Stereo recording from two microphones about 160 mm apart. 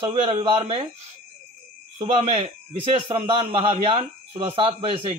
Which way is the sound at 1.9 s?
35° right (ahead or behind).